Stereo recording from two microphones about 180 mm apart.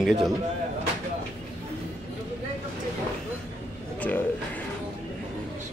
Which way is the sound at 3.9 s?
10° left (ahead or behind).